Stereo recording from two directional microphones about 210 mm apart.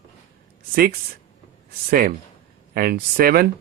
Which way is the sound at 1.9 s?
45° right (ahead or behind).